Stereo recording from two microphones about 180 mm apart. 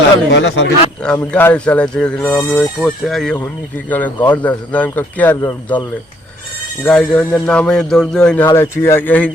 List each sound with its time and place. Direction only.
0.3 s a man's voice: 80° left
1.0 s speech: 10° left (ahead or behind)
6.8 s speech: 5° left (ahead or behind)